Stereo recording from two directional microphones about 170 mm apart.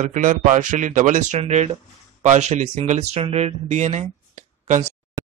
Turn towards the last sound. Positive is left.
turn(degrees=-45)  # may be behind; listen again after turning